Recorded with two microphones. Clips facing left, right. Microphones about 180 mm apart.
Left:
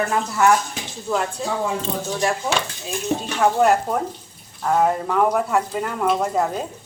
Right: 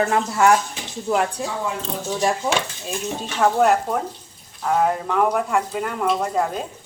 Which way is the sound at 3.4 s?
Centre (ahead or behind).